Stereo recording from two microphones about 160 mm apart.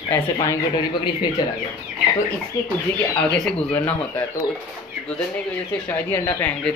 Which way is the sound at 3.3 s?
5° left (ahead or behind).